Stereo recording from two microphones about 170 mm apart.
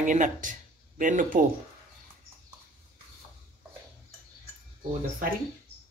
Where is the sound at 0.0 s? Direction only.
50° right (ahead or behind).